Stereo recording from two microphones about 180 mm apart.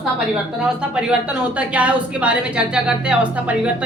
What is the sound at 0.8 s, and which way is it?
A woman's voice, 5° right (ahead or behind).